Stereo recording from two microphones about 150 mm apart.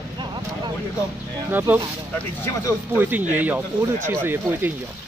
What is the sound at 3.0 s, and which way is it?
Speech, 10° right (ahead or behind).